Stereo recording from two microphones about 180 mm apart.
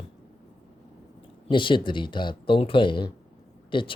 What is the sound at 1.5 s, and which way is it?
A man's voice, 25° left (ahead or behind).